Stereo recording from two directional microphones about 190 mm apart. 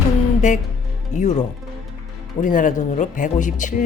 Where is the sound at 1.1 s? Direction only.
40° left (ahead or behind).